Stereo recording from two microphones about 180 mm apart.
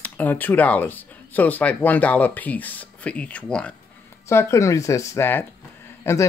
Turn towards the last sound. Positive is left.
turn(degrees=15)  # may be behind; listen again after turning